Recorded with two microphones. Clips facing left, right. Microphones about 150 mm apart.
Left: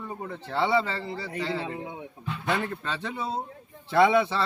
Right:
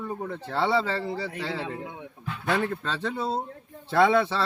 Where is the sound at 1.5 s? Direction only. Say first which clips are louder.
Left 1 dB; 15° left (ahead or behind).